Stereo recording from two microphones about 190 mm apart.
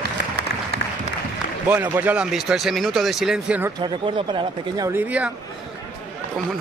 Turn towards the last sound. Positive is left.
turn(degrees=-10)  # may be behind; listen again after turning